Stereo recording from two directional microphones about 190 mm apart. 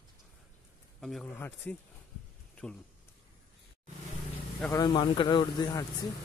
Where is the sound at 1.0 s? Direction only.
Centre (ahead or behind).